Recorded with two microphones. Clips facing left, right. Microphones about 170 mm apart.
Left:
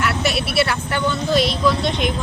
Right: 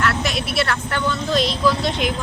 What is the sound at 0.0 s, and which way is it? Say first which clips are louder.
Speech: left 1 dB; 5° left (ahead or behind).